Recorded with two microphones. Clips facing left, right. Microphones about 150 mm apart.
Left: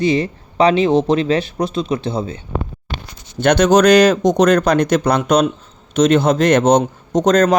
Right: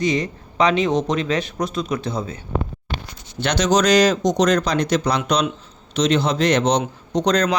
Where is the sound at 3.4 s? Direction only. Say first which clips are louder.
Left 7 dB; 55° left (ahead or behind).